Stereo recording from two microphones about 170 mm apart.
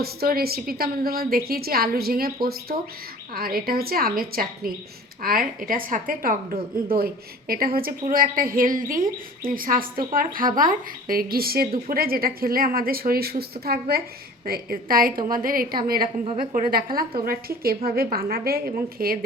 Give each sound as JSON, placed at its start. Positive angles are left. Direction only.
{"t": 0.0, "sound": "speech", "side_deg": -65}
{"t": 16.2, "sound": "a woman's voice", "side_deg": -30}
{"t": 16.6, "sound": "speech", "side_deg": -60}